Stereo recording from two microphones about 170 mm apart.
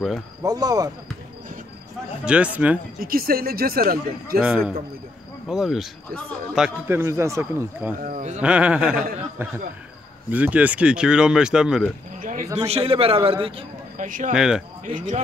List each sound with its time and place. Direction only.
0.4 s speech: 20° right (ahead or behind)
2.2 s speech: 5° right (ahead or behind)
3.0 s speech: 60° right (ahead or behind)
4.4 s speech: 5° right (ahead or behind)
6.9 s speech: 15° right (ahead or behind)
8.0 s speech: 50° right (ahead or behind)
8.4 s speech: 5° right (ahead or behind)
12.2 s a sound: 50° right (ahead or behind)
12.5 s a man's voice: 35° right (ahead or behind)
13.9 s speech: 50° right (ahead or behind)
14.3 s speech: 5° right (ahead or behind)